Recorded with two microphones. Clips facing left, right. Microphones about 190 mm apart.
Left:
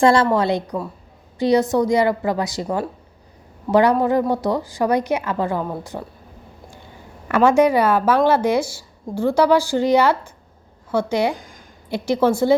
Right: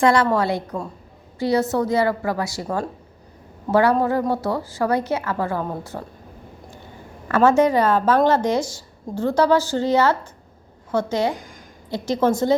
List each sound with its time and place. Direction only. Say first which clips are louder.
0.0 s a woman's voice: left 2 dB; 30° left (ahead or behind)
3.7 s a woman's voice: left 2 dB; 15° left (ahead or behind)
7.3 s a woman's voice: left 1 dB; 15° left (ahead or behind)